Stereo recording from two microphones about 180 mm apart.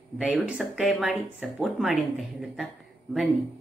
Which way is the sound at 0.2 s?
5° right (ahead or behind).